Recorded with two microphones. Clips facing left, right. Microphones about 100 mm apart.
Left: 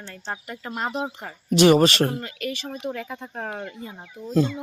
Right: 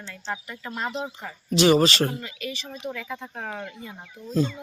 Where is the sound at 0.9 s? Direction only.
55° left (ahead or behind).